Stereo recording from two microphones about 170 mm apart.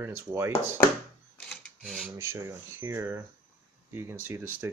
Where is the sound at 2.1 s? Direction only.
15° right (ahead or behind).